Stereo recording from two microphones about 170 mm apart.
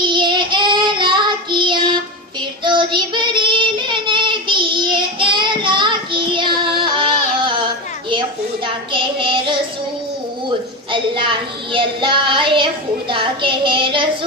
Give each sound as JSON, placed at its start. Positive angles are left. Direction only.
{"t": 0.0, "sound": "child singing", "side_deg": -25}
{"t": 7.3, "sound": "a sound", "side_deg": -30}
{"t": 8.6, "sound": "child singing", "side_deg": -30}
{"t": 10.9, "sound": "child singing", "side_deg": -30}